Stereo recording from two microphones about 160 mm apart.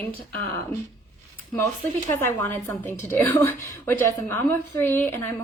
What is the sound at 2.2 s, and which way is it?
A woman's voice, 15° left (ahead or behind).